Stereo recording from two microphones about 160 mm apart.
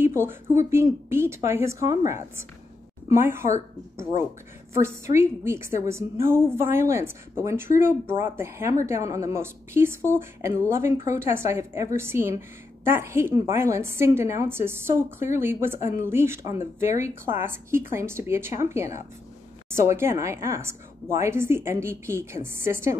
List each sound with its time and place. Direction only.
0.0 s a woman's voice: 15° right (ahead or behind)
4.8 s a woman's voice: 15° right (ahead or behind)
19.9 s a woman's voice: 15° right (ahead or behind)